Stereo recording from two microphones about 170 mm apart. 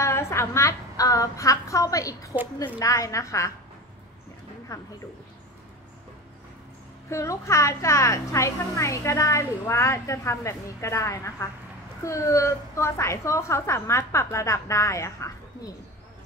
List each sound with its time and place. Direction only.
0.0 s a woman's voice: 15° left (ahead or behind)
4.7 s a woman's voice: 20° left (ahead or behind)
7.1 s a woman's voice: 15° left (ahead or behind)